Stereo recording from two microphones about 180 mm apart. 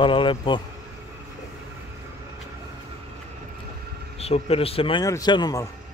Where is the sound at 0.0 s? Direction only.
30° left (ahead or behind).